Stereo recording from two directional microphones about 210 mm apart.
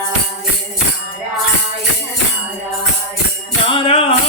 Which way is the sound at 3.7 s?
25° left (ahead or behind).